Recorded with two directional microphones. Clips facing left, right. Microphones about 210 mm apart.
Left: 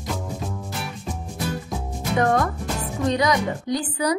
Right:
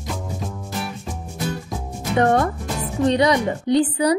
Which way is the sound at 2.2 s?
30° right (ahead or behind).